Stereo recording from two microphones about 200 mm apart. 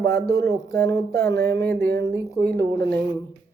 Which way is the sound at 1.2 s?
55° right (ahead or behind).